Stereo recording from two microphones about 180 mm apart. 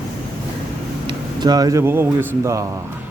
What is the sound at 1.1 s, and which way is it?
Speech, 20° right (ahead or behind).